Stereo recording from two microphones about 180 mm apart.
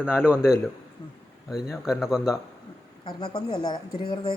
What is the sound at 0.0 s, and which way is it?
Speech, 5° right (ahead or behind).